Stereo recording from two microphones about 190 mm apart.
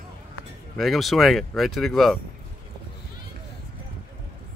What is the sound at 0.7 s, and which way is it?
Speech, centre (ahead or behind).